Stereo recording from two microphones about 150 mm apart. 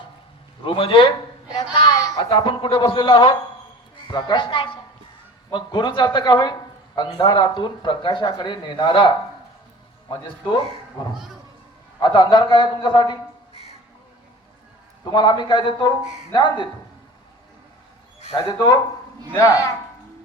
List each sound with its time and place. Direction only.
0.6 s speech: 35° left (ahead or behind)
2.1 s speech: 35° left (ahead or behind)
15.0 s speech: 30° left (ahead or behind)
18.3 s speech: 25° left (ahead or behind)